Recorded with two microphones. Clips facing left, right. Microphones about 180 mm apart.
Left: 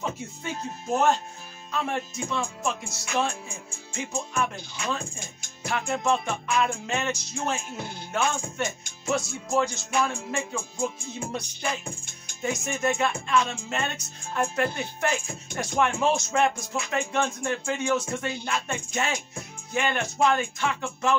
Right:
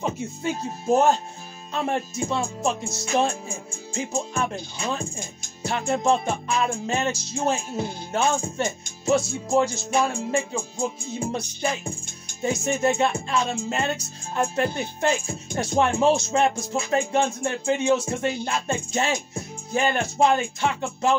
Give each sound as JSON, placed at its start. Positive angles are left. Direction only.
{"t": 1.7, "sound": "music", "side_deg": -30}
{"t": 12.4, "sound": "music", "side_deg": -30}